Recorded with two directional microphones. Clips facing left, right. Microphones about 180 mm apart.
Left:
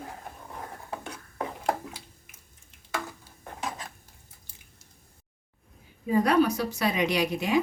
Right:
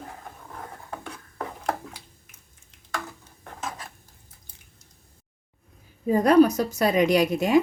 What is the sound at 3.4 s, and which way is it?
Dishes, 10° left (ahead or behind).